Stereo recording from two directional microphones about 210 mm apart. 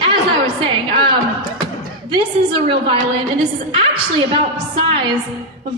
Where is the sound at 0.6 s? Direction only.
25° right (ahead or behind).